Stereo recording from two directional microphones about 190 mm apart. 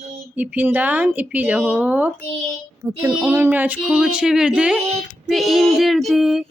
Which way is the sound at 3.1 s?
10° right (ahead or behind).